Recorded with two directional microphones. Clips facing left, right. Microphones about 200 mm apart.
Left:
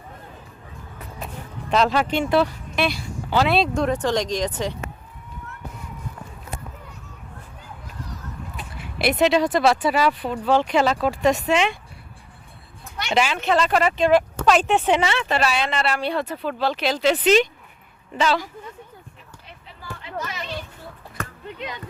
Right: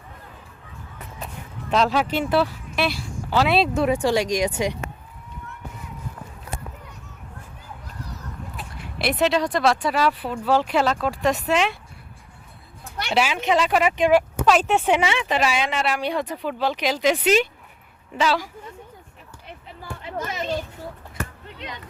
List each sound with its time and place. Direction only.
1.7 s speech: centre (ahead or behind)
8.5 s speech: centre (ahead or behind)
13.1 s speech: 5° right (ahead or behind)
20.1 s a sound: 45° right (ahead or behind)